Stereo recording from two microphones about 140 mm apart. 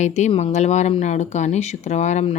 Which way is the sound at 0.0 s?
55° left (ahead or behind).